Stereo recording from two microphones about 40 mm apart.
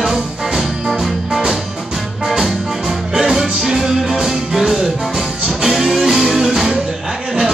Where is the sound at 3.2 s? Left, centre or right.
Centre.